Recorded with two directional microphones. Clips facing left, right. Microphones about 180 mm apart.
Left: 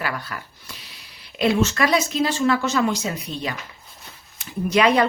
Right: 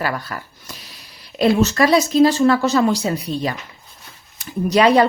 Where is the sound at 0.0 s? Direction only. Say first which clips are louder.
Right 5 dB; 40° right (ahead or behind).